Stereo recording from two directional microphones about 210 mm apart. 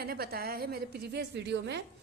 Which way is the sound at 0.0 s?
45° right (ahead or behind).